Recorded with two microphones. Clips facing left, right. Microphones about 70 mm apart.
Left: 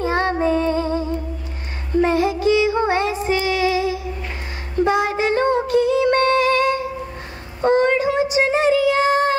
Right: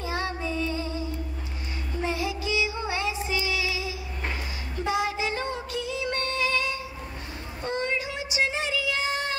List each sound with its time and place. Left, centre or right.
0.0 s child singing: left
2.0 s music: left
7.6 s child singing: left